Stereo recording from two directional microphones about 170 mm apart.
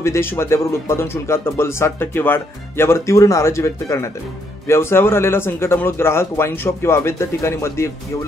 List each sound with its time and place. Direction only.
0.0 s speech: 15° left (ahead or behind)